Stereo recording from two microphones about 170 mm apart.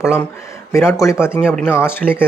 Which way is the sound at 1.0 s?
15° left (ahead or behind).